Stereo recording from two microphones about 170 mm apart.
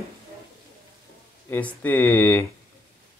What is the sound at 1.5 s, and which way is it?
Speech, 10° left (ahead or behind).